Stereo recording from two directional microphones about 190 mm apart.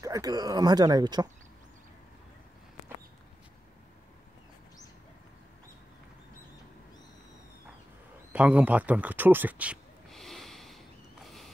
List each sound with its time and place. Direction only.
0.0 s speech: 20° right (ahead or behind)
8.3 s a sound: 5° right (ahead or behind)
11.2 s mechanisms: centre (ahead or behind)